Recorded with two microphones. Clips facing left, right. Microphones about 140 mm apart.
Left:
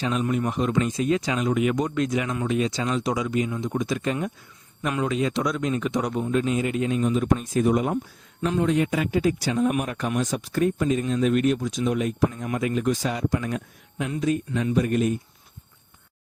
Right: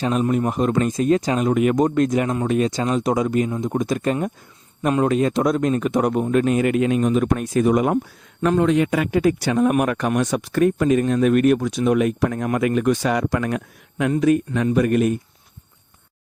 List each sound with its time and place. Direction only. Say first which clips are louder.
0.0 s a man's voice: right 5 dB; 45° right (ahead or behind); by 7.9 s 85° right
8.4 s a man's voice: right 5 dB; 60° right (ahead or behind)